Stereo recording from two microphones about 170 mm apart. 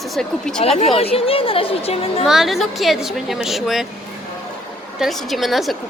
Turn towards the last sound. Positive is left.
turn(degrees=0)  # may be behind; listen again after turning